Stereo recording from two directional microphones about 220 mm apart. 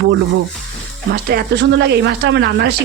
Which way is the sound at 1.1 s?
45° right (ahead or behind).